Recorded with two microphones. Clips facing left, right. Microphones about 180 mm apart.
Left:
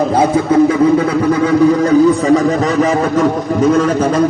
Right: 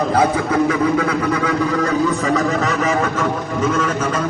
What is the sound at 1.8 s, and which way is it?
Speech, 35° left (ahead or behind).